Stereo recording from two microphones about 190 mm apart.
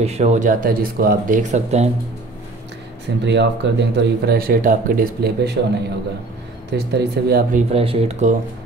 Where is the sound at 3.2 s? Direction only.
65° right (ahead or behind).